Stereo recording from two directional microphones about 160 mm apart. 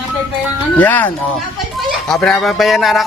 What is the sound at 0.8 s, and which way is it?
Speech, 10° left (ahead or behind).